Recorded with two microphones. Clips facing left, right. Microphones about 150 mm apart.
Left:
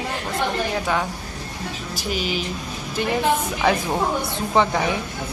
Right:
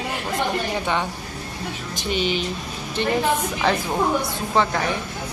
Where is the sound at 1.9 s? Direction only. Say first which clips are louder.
Right 2 dB; 5° left (ahead or behind).